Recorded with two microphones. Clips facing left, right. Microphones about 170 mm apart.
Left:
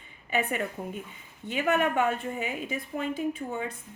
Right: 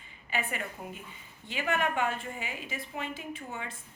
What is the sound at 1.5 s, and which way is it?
Speech, 50° left (ahead or behind).